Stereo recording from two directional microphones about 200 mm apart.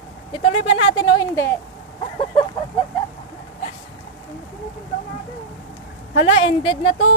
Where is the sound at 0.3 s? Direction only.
30° left (ahead or behind).